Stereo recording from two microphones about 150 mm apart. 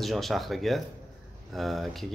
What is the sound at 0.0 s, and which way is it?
A man's voice, centre (ahead or behind).